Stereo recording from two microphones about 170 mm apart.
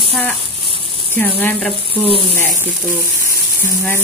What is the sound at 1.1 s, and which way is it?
Speech, 10° left (ahead or behind).